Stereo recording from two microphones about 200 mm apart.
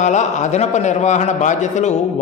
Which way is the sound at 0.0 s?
35° left (ahead or behind).